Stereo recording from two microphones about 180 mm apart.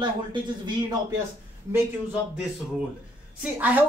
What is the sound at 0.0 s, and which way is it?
Speech, 25° right (ahead or behind).